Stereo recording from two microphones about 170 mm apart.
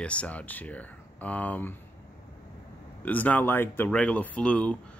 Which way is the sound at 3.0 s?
10° left (ahead or behind).